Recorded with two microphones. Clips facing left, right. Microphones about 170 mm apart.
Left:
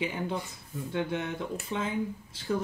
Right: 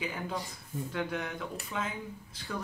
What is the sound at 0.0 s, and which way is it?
Speech, 25° left (ahead or behind).